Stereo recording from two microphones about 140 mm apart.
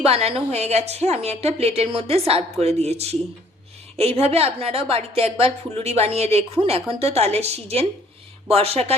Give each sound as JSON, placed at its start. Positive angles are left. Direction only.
{"t": 0.0, "sound": "a woman's voice", "side_deg": -45}